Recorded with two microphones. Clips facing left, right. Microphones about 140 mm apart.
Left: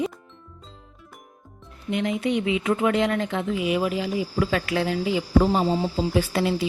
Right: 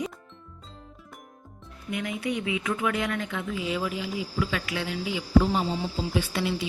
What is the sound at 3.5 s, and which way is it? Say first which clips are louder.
Speech: left 6 dB; 20° left (ahead or behind).